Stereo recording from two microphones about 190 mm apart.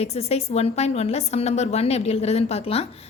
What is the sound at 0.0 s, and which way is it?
A woman's voice, 35° left (ahead or behind).